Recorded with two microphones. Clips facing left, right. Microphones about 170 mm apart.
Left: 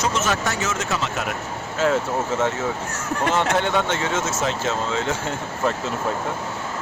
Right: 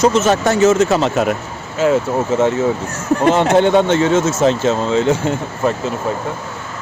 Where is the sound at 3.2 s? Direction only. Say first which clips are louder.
Right 8 dB; 25° right (ahead or behind).